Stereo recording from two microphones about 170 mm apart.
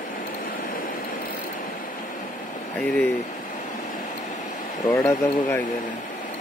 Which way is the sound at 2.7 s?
10° left (ahead or behind).